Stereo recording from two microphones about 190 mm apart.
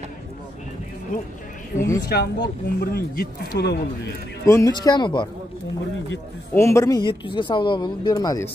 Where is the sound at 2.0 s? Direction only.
60° left (ahead or behind).